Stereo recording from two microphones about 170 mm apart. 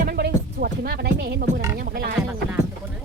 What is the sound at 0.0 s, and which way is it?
Music, 60° right (ahead or behind).